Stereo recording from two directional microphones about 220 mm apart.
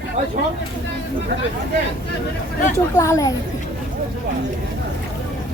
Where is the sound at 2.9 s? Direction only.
15° left (ahead or behind).